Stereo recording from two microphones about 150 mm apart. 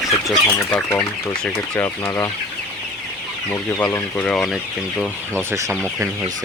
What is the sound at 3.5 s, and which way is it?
Speech, 15° left (ahead or behind).